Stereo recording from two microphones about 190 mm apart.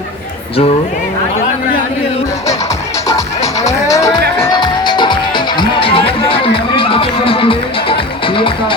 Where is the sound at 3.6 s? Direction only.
15° left (ahead or behind).